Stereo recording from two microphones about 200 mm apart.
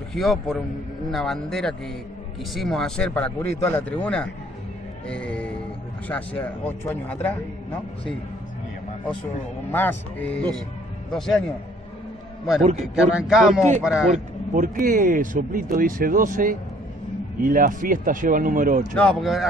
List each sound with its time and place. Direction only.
0.1 s speech: centre (ahead or behind)
9.7 s speech: 10° left (ahead or behind)
12.8 s speech: 5° right (ahead or behind)
14.1 s speech: 40° right (ahead or behind)
18.9 s speech: centre (ahead or behind)